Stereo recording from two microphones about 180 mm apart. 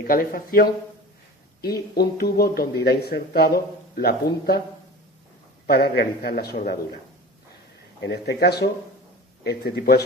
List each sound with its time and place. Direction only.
0.1 s speech: 55° left (ahead or behind)
5.6 s speech: 60° left (ahead or behind)
8.0 s speech: 65° left (ahead or behind)